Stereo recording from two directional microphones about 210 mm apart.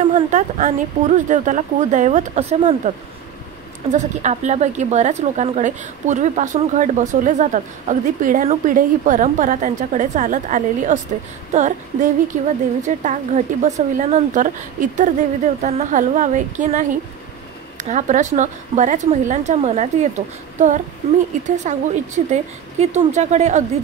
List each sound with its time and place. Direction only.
0.1 s a woman's voice: 35° right (ahead or behind)
3.9 s a woman's voice: 35° right (ahead or behind)